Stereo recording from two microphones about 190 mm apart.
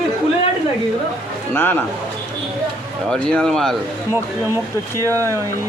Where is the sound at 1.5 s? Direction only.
10° left (ahead or behind).